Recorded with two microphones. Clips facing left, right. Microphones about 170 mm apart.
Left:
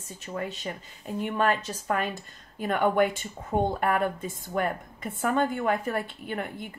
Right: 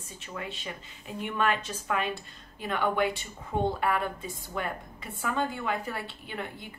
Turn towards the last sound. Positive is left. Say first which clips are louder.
# left 5 dB
turn(degrees=50)  # may be behind; listen again after turning